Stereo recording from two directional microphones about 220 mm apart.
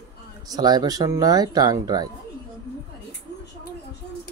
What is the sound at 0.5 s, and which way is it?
Speech, 15° right (ahead or behind).